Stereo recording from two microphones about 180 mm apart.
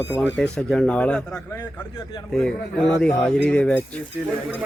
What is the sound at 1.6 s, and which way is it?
Speech, 20° left (ahead or behind).